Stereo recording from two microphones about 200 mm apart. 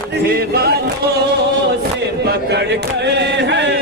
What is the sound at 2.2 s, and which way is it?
Chant, 55° right (ahead or behind).